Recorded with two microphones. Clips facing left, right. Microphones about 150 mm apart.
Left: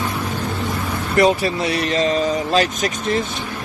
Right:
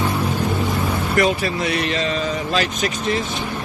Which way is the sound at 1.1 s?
35° left (ahead or behind).